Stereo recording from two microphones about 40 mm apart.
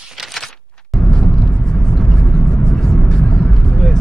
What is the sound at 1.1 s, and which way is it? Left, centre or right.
Vehicle, left.